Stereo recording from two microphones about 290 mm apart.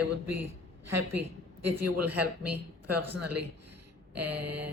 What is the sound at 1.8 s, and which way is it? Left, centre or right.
Speech, right.